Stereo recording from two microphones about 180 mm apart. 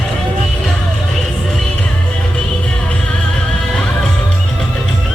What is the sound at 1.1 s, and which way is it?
Music, centre (ahead or behind).